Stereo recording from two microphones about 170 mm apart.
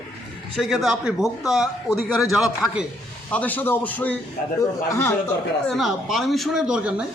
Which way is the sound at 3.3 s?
10° left (ahead or behind).